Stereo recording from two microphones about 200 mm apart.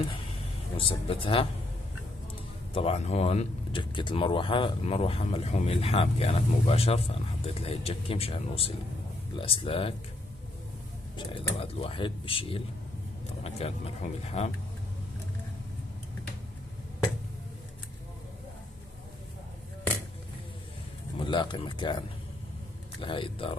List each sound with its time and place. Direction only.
0.7 s speech: 25° left (ahead or behind)
2.7 s speech: 30° left (ahead or behind)
11.1 s speech: 25° left (ahead or behind)
21.2 s speech: 25° left (ahead or behind)